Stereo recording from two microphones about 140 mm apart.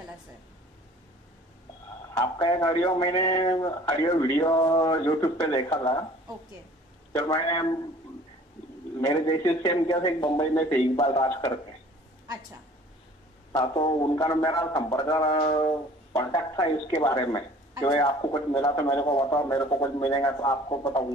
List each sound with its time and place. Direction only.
2.1 s speech: 30° left (ahead or behind)
7.1 s speech: 30° left (ahead or behind)
9.0 s speech: 30° left (ahead or behind)
10.5 s a man's voice: 15° left (ahead or behind)
11.0 s speech: 30° left (ahead or behind)
13.5 s speech: 30° left (ahead or behind)